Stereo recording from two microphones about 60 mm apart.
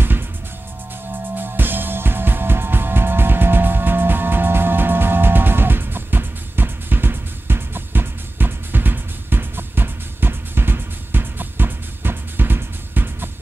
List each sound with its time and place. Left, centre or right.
1.3 s music: right